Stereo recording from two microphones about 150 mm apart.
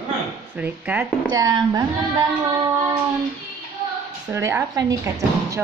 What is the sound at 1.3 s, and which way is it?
Speech, 25° right (ahead or behind).